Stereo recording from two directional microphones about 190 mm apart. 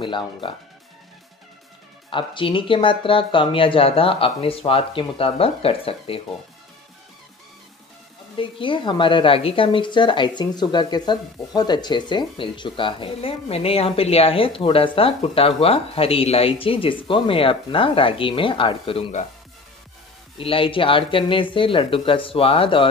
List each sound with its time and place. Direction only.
0.0 s speech: 25° left (ahead or behind)
2.0 s speech: 25° left (ahead or behind)
8.4 s speech: 25° left (ahead or behind)
20.3 s speech: 30° left (ahead or behind)